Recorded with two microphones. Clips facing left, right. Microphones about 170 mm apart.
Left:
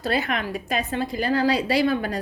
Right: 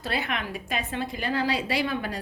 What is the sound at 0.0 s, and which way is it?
A woman's voice, 40° left (ahead or behind).